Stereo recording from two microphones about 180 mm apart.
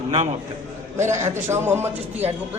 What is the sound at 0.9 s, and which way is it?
Speech, 15° right (ahead or behind).